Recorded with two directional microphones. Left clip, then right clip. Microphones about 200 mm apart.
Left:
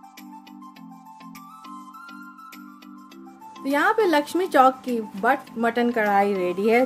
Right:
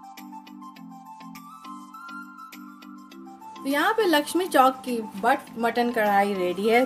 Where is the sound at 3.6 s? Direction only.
30° left (ahead or behind).